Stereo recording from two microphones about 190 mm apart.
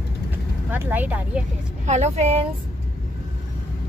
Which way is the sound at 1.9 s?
35° right (ahead or behind).